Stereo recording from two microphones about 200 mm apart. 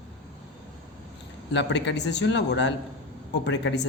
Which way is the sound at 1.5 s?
60° left (ahead or behind).